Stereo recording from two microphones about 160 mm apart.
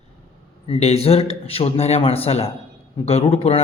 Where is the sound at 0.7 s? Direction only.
40° left (ahead or behind).